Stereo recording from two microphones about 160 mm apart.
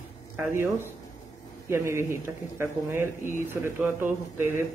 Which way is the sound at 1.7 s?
15° right (ahead or behind).